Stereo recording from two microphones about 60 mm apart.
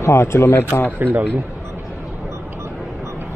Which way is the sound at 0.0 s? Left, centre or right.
Left.